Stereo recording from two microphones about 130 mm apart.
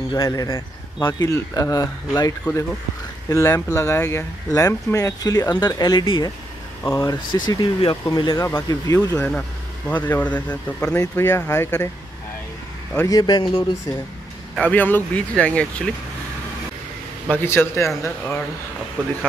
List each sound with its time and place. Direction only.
0.1 s speech: 25° left (ahead or behind)
6.8 s speech: 20° left (ahead or behind)
7.3 s speech: 35° left (ahead or behind)
8.4 s speech: 20° left (ahead or behind)
9.8 s speech: 15° left (ahead or behind)
13.1 s speech: 35° left (ahead or behind)
14.6 s speech: 15° left (ahead or behind)
17.3 s speech: 15° left (ahead or behind)